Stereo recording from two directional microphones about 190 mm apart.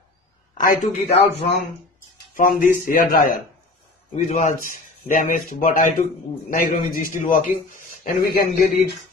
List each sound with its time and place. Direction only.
0.6 s speech: 50° left (ahead or behind)
2.3 s a man's voice: 50° left (ahead or behind)